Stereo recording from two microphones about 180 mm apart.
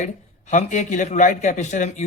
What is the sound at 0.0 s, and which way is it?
A man's voice, 40° left (ahead or behind).